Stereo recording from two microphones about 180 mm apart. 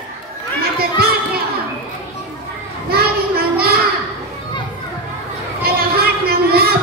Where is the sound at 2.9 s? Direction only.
60° right (ahead or behind).